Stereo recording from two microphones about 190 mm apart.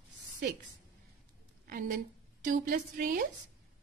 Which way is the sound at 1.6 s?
45° right (ahead or behind).